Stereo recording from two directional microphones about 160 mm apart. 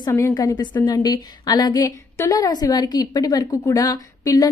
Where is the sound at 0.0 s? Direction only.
20° left (ahead or behind).